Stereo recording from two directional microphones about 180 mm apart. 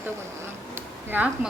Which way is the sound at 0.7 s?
10° right (ahead or behind).